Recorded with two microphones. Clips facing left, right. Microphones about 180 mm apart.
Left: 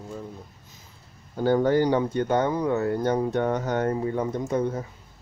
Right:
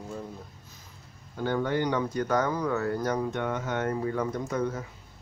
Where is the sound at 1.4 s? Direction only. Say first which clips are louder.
Left 7 dB; 35° left (ahead or behind).